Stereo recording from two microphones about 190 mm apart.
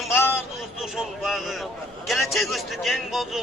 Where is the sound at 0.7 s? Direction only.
Centre (ahead or behind).